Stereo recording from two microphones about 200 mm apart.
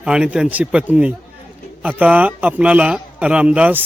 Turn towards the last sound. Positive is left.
turn(degrees=-5)  # may be behind; listen again after turning